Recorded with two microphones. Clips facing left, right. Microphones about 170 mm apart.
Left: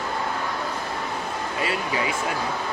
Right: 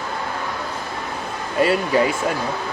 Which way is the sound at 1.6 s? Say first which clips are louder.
Right 10 dB; 45° right (ahead or behind).